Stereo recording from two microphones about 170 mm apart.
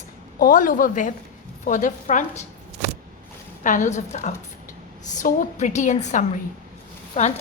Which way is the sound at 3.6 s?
50° left (ahead or behind).